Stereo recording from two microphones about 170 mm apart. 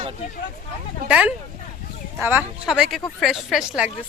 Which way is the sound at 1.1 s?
5° right (ahead or behind).